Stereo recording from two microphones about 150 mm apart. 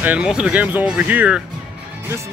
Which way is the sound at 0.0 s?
5° right (ahead or behind).